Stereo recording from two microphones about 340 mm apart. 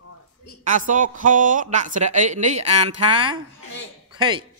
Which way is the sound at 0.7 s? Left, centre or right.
Right.